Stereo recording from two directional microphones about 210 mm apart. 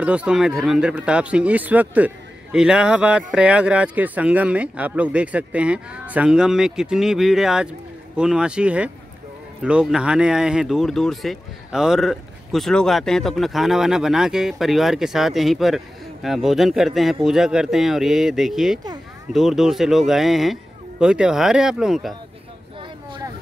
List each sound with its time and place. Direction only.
0.0 s speech: 5° right (ahead or behind)